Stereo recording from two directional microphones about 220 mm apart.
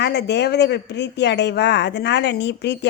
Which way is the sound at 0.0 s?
50° left (ahead or behind).